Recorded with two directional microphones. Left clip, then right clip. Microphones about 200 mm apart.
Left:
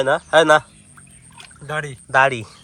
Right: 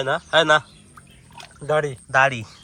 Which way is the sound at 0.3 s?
10° right (ahead or behind).